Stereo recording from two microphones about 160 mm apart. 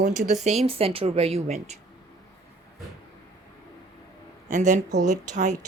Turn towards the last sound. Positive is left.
turn(degrees=-50)  # may be behind; listen again after turning